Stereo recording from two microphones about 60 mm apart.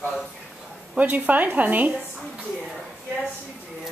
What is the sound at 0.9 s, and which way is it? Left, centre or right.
A woman's voice, right.